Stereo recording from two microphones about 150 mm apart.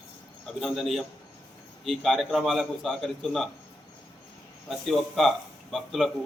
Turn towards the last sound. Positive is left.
turn(degrees=0)  # may be behind; listen again after turning